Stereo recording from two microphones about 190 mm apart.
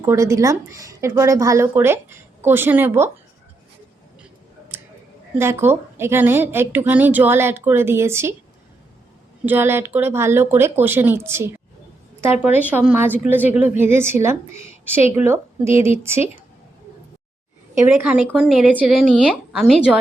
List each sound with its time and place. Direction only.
0.0 s a woman's voice: 15° right (ahead or behind)
4.7 s a sound: 10° right (ahead or behind)
5.4 s a woman's voice: 15° right (ahead or behind)
9.5 s a woman's voice: 10° right (ahead or behind)
17.7 s speech: 10° right (ahead or behind)